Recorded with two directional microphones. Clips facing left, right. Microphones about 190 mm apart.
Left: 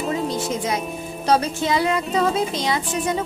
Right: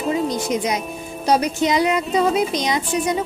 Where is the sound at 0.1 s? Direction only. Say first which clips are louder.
Right 5 dB; 15° right (ahead or behind).